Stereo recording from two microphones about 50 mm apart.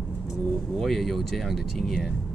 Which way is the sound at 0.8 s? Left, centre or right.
Centre.